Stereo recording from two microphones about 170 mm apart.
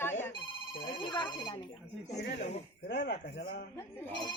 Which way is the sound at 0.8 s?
30° left (ahead or behind).